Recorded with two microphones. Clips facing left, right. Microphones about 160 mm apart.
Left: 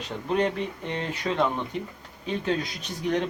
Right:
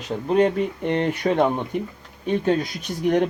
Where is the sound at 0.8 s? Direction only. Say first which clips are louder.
Right 9 dB; 60° right (ahead or behind).